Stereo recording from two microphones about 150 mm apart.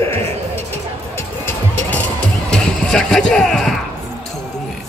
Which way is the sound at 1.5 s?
10° left (ahead or behind).